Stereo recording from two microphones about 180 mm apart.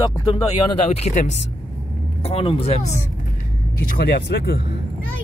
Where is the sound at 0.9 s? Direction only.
40° left (ahead or behind).